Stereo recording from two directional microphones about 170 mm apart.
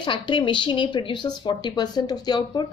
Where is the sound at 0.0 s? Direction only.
30° left (ahead or behind).